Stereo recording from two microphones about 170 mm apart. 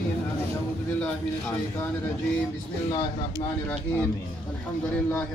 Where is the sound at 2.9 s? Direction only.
25° left (ahead or behind).